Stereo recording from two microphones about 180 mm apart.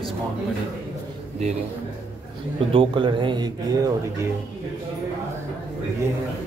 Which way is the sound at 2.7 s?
30° right (ahead or behind).